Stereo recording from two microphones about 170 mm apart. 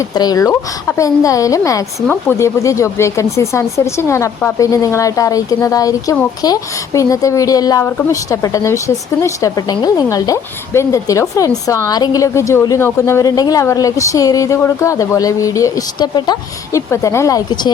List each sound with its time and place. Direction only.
0.0 s a woman's voice: 20° left (ahead or behind)